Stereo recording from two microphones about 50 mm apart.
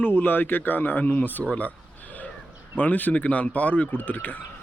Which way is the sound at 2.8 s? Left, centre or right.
Left.